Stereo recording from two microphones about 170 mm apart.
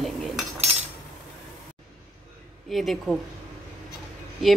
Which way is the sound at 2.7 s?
Centre (ahead or behind).